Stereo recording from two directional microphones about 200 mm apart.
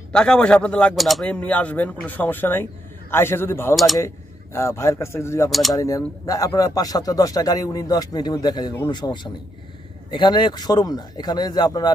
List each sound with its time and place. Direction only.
0.1 s speech: 5° left (ahead or behind)
3.7 s speech: centre (ahead or behind)
4.0 s speech: 15° left (ahead or behind)
5.5 s speech: centre (ahead or behind)
5.8 s speech: 15° left (ahead or behind)